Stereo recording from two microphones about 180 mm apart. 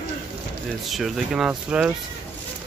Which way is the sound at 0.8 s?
Centre (ahead or behind).